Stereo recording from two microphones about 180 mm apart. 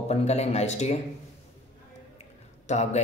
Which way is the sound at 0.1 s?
35° left (ahead or behind).